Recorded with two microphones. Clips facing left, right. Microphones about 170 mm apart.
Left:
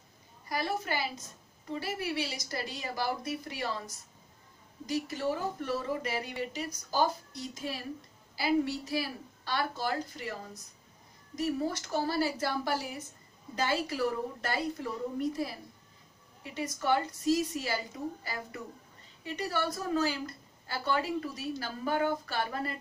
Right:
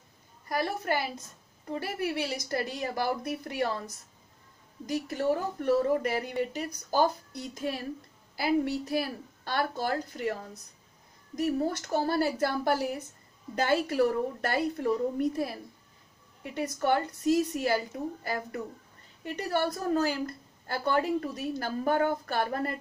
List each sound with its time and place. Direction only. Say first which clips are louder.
0.5 s a woman's voice: right 3 dB; 55° right (ahead or behind)
4.8 s a woman's voice: right 4 dB; 55° right (ahead or behind)
16.5 s a woman's voice: right 3 dB; 55° right (ahead or behind)